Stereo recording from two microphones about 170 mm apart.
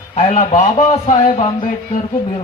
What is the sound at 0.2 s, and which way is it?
A man's voice, 45° left (ahead or behind).